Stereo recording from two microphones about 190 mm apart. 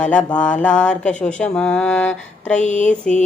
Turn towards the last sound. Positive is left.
turn(degrees=5)  # may be behind; listen again after turning